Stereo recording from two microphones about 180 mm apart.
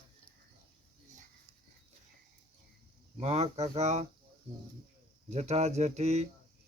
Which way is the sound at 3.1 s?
35° right (ahead or behind).